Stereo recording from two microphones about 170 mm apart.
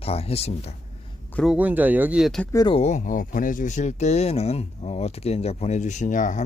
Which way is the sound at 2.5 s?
20° left (ahead or behind).